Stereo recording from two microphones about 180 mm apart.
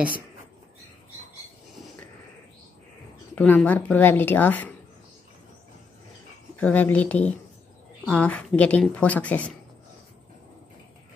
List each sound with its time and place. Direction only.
3.3 s speech: 10° left (ahead or behind)
6.5 s speech: 10° left (ahead or behind)